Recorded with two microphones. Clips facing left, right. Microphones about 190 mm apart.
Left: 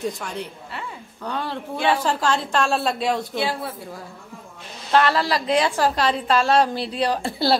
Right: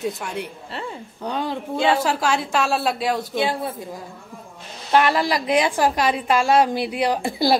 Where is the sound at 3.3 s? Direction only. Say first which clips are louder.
Right 2 dB; 20° right (ahead or behind).